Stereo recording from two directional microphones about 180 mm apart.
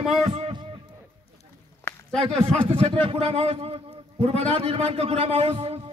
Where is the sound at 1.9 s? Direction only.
5° left (ahead or behind).